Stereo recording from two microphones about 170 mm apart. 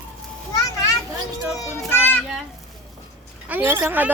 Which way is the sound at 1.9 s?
10° left (ahead or behind).